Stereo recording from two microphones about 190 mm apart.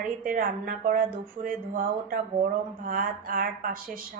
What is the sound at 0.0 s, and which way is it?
A woman's voice, 45° right (ahead or behind).